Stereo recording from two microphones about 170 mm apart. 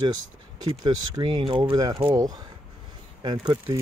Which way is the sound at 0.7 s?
25° right (ahead or behind).